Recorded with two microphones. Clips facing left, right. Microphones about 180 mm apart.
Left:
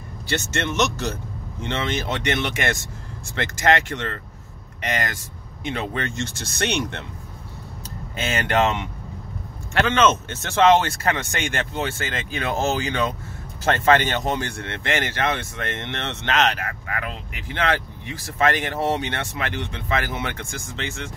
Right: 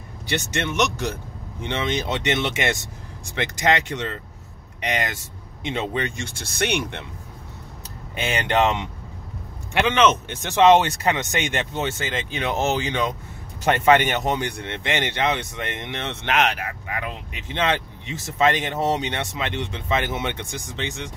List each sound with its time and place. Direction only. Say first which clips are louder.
0.3 s speech: even; 15° right (ahead or behind)
8.2 s speech: even; 20° right (ahead or behind)